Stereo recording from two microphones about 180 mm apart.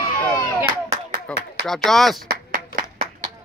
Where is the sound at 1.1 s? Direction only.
60° right (ahead or behind).